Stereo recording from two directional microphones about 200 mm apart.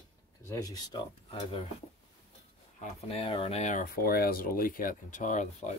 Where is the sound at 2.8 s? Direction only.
30° left (ahead or behind).